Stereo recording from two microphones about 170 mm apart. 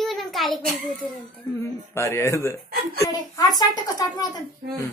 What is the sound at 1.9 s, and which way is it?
A child's voice, 15° left (ahead or behind).